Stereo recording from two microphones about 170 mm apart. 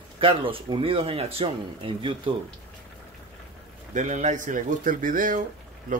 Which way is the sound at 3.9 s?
45° right (ahead or behind).